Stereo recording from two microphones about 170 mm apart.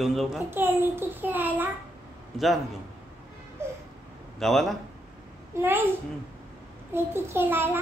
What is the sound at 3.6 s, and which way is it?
Baby cry, 15° right (ahead or behind).